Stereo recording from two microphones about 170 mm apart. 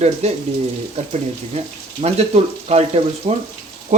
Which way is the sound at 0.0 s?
40° right (ahead or behind).